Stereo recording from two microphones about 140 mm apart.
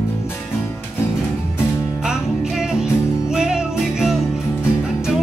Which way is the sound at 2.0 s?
5° right (ahead or behind).